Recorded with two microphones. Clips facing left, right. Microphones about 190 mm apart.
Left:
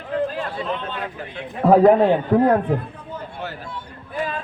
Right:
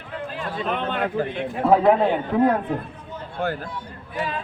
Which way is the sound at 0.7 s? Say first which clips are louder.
Right 2 dB; 60° right (ahead or behind).